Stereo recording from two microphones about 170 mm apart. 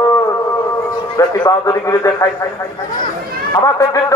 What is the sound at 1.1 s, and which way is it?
Speech, 20° left (ahead or behind).